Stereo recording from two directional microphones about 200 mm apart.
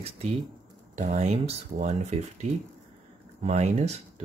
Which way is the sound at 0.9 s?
35° right (ahead or behind).